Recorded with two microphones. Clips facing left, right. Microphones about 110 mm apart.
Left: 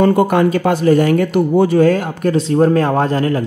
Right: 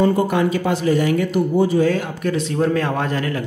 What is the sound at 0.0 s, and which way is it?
Speech, 65° left (ahead or behind).